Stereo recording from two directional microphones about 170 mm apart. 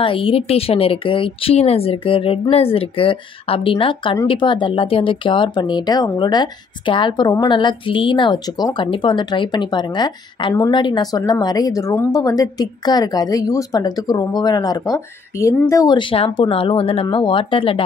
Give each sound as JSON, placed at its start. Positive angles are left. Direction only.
{"t": 0.0, "sound": "speech", "side_deg": 30}